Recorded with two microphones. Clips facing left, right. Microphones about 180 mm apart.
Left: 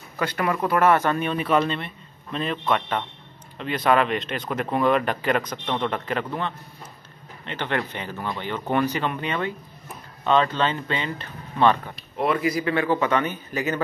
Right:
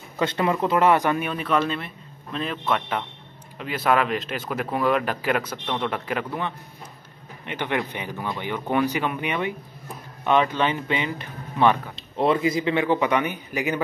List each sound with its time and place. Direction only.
0.2 s speech: 20° right (ahead or behind)
11.9 s speech: 25° right (ahead or behind)